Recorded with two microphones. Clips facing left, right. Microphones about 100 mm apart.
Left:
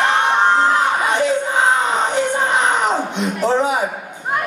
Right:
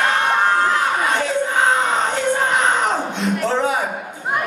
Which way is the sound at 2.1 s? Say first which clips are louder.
Left 1 dB; 20° left (ahead or behind).